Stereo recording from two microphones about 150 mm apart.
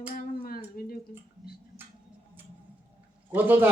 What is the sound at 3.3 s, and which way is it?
Speech, 15° right (ahead or behind).